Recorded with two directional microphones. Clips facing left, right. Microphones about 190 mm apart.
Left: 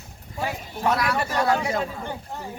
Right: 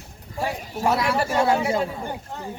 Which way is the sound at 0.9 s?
25° right (ahead or behind).